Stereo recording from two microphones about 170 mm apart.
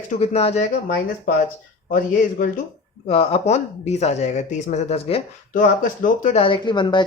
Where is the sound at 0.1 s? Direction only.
35° left (ahead or behind).